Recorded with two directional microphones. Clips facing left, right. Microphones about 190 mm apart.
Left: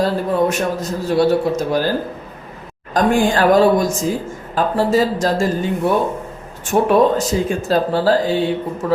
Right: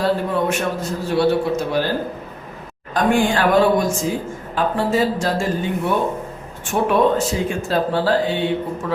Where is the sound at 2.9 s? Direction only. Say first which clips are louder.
Left 2 dB; 40° left (ahead or behind).